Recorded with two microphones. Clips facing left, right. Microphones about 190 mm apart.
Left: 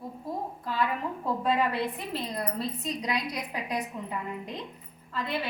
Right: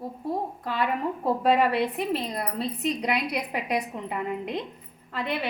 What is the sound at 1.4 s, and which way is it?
A woman's voice, 70° right (ahead or behind).